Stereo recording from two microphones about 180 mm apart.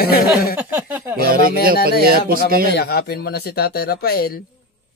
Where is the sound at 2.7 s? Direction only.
60° left (ahead or behind).